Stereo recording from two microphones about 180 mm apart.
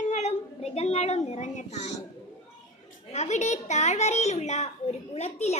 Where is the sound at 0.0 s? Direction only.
40° left (ahead or behind).